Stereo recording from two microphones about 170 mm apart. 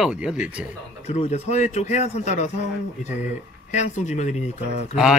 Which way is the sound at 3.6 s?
45° left (ahead or behind).